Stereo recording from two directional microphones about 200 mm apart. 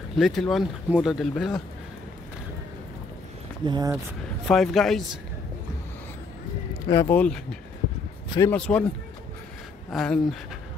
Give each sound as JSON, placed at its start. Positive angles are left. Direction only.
{"t": 0.2, "sound": "speech", "side_deg": 0}
{"t": 3.6, "sound": "speech", "side_deg": -20}
{"t": 4.5, "sound": "speech", "side_deg": 0}
{"t": 6.9, "sound": "speech", "side_deg": 15}
{"t": 9.8, "sound": "speech", "side_deg": 0}